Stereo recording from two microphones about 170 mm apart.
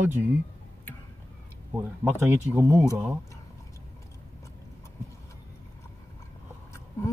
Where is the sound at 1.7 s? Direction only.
10° right (ahead or behind).